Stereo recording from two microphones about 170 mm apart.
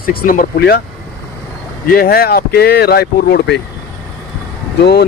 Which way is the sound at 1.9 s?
60° left (ahead or behind).